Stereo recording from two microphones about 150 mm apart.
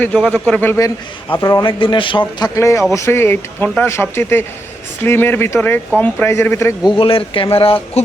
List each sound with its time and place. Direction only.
0.0 s speech: 5° left (ahead or behind); by 1.7 s 20° left (ahead or behind)
1.8 s speech: 35° left (ahead or behind)
2.6 s speech: 20° left (ahead or behind)
6.9 s speech: 35° left (ahead or behind)